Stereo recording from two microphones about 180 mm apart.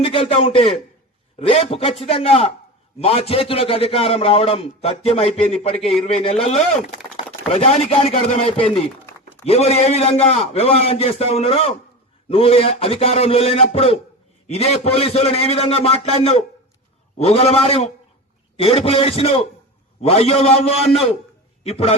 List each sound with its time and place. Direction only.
0.0 s a man's voice: 30° left (ahead or behind)